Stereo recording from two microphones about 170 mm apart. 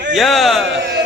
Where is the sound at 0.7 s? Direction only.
90° right.